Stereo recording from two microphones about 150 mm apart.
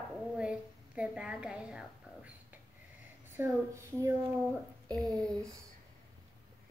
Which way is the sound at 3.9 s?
20° right (ahead or behind).